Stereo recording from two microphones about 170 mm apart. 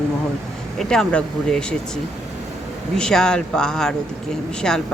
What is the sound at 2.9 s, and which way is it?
Speech, 5° left (ahead or behind).